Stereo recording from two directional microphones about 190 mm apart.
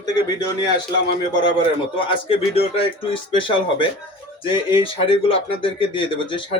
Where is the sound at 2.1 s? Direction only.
30° left (ahead or behind).